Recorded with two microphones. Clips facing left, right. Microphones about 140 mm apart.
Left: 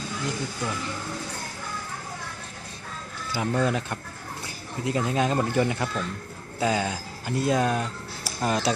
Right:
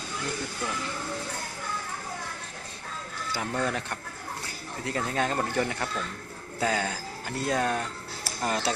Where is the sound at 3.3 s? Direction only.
15° left (ahead or behind).